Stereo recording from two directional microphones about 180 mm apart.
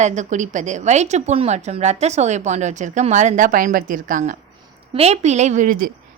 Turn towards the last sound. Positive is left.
turn(degrees=-50)  # may be behind; listen again after turning